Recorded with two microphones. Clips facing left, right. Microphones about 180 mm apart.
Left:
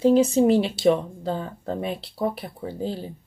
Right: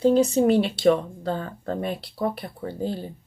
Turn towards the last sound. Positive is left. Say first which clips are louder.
# right 1 dB
turn(degrees=5)  # may be behind; listen again after turning